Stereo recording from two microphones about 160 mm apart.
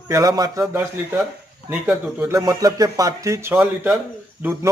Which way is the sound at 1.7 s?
10° right (ahead or behind).